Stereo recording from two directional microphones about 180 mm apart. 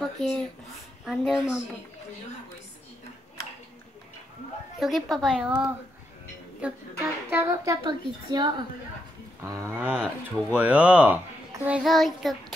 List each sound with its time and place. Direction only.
0.0 s a sound: centre (ahead or behind)
1.0 s child singing: centre (ahead or behind)
4.7 s a woman's voice: centre (ahead or behind)
5.1 s child singing: centre (ahead or behind)
6.6 s a woman's voice: 10° right (ahead or behind)
9.9 s speech: 10° left (ahead or behind)
10.6 s speech: 5° right (ahead or behind)
11.6 s child singing: 5° right (ahead or behind)